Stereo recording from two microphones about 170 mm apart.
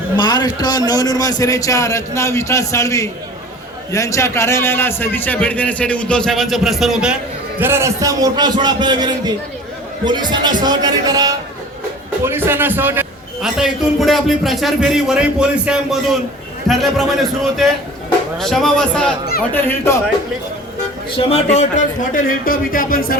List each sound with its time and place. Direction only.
0.2 s a man's voice: 25° left (ahead or behind); by 7.2 s 5° right (ahead or behind)
7.6 s a man's voice: 15° right (ahead or behind); by 19.1 s 5° left (ahead or behind)
19.6 s a man's voice: 15° left (ahead or behind)
21.2 s speech: 35° left (ahead or behind); by 23.1 s 60° left (ahead or behind)